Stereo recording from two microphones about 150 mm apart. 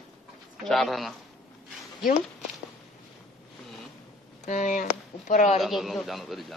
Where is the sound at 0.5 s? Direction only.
Centre (ahead or behind).